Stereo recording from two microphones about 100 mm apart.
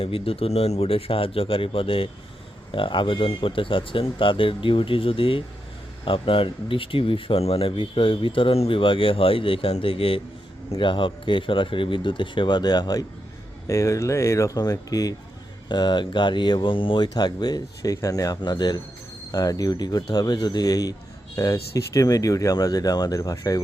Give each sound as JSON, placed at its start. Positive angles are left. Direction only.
{"t": 0.0, "sound": "speech", "side_deg": 70}
{"t": 13.7, "sound": "speech", "side_deg": 30}
{"t": 15.7, "sound": "speech", "side_deg": 50}